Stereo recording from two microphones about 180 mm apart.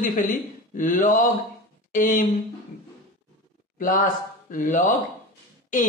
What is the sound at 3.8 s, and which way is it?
Speech, 45° left (ahead or behind).